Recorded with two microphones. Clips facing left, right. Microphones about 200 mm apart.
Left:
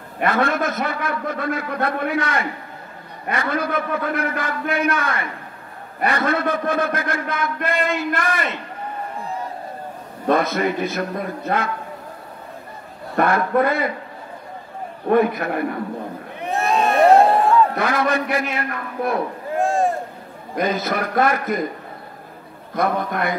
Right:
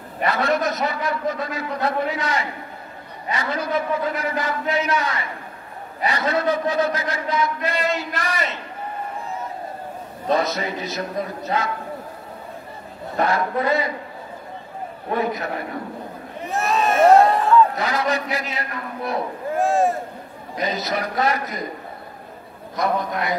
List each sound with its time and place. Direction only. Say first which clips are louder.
0.2 s a man's voice: left 1 dB; 50° left (ahead or behind)
10.2 s a man's voice: left 3 dB; 55° left (ahead or behind)
13.1 s a man's voice: left 3 dB; 55° left (ahead or behind)
15.0 s a man's voice: left 7 dB; 55° left (ahead or behind)
16.5 s a sound: left 2 dB; centre (ahead or behind)
17.7 s a man's voice: left 3 dB; 55° left (ahead or behind)
19.6 s boat: even; centre (ahead or behind)
20.5 s a man's voice: left 3 dB; 55° left (ahead or behind)
22.8 s a man's voice: left 2 dB; 55° left (ahead or behind)